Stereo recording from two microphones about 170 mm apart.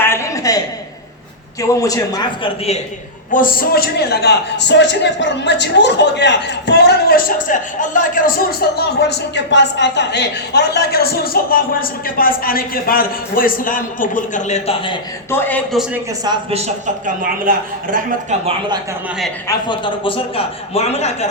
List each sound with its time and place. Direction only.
0.0 s a sound: 15° left (ahead or behind)
1.6 s a man's voice: 20° left (ahead or behind)
3.3 s a man's voice: 60° left (ahead or behind); by 14.8 s 40° left (ahead or behind)
15.3 s a man's voice: 10° left (ahead or behind)
16.5 s a man's voice: 40° right (ahead or behind)
17.2 s speech: 55° right (ahead or behind)
19.5 s a man's voice: 25° left (ahead or behind)